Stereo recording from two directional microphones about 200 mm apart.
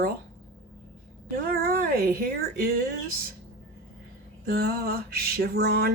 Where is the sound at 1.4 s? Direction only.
50° right (ahead or behind).